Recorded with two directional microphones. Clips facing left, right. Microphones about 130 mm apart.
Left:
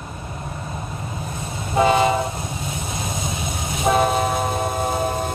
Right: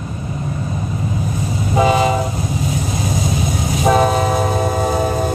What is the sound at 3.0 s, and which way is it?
Vehicle, 25° left (ahead or behind).